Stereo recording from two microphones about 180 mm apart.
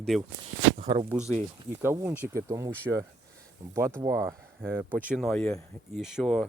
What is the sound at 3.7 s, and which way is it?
Speech, 15° right (ahead or behind).